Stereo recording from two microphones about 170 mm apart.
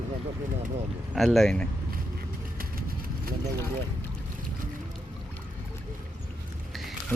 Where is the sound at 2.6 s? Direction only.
60° right (ahead or behind).